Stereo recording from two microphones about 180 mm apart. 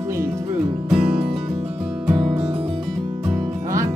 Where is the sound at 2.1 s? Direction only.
25° right (ahead or behind).